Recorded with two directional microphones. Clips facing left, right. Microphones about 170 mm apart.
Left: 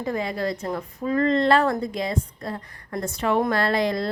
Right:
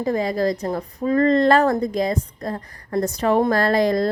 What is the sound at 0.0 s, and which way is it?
A woman's voice, 35° right (ahead or behind).